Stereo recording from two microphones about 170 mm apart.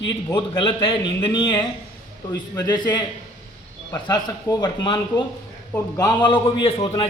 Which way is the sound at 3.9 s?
20° left (ahead or behind).